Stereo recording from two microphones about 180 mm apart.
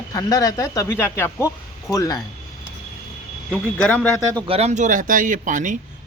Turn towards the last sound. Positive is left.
turn(degrees=-45)  # may be behind; listen again after turning